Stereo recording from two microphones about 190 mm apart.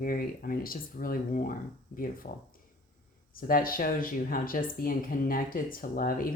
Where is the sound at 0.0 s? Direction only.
50° left (ahead or behind).